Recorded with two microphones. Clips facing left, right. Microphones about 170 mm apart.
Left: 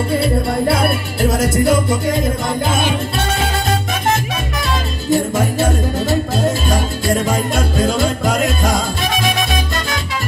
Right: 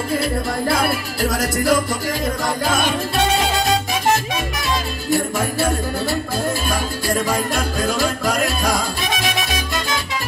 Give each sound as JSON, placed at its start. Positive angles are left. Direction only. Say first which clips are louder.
{"t": 0.2, "sound": "music", "louder": "left 5 dB", "side_deg": 30}
{"t": 5.1, "sound": "music", "louder": "left 4 dB", "side_deg": 20}